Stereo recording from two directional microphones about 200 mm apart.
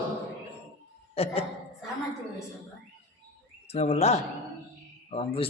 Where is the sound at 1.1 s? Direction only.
30° left (ahead or behind).